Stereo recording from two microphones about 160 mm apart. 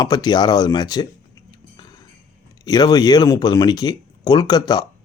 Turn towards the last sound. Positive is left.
turn(degrees=25)  # may be behind; listen again after turning